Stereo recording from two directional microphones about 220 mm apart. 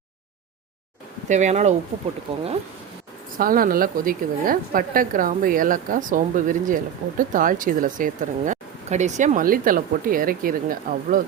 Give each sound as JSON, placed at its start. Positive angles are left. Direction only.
{"t": 1.3, "sound": "a woman's voice", "side_deg": -30}
{"t": 3.3, "sound": "a woman's voice", "side_deg": -40}